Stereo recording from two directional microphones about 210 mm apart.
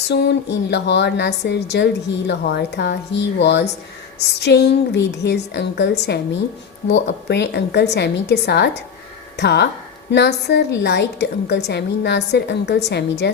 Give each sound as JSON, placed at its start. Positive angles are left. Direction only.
{"t": 0.1, "sound": "a woman's voice", "side_deg": 55}